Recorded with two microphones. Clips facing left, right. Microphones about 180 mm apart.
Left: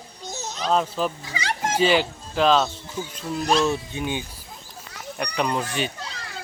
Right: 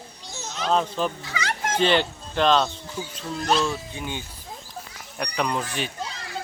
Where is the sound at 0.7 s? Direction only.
5° left (ahead or behind).